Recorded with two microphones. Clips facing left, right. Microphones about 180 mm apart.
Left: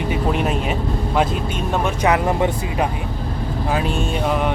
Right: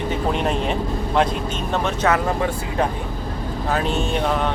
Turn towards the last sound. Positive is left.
turn(degrees=10)  # may be behind; listen again after turning